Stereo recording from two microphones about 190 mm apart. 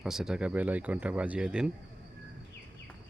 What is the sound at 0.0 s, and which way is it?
Speech, 5° right (ahead or behind).